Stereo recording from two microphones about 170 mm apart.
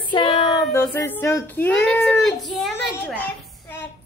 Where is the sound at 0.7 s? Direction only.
15° left (ahead or behind).